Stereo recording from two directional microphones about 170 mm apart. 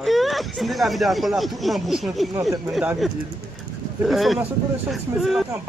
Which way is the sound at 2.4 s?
15° right (ahead or behind).